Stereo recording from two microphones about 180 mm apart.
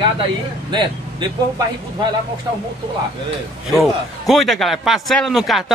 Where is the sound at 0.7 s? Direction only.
25° right (ahead or behind).